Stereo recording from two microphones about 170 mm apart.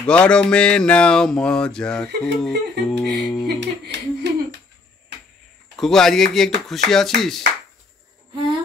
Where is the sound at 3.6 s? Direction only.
90° right.